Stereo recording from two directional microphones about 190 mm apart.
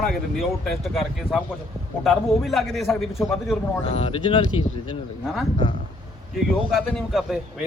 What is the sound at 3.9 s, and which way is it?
Speech, 30° left (ahead or behind).